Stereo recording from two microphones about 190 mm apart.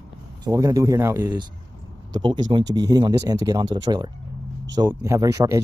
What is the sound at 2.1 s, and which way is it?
Speech, 25° right (ahead or behind).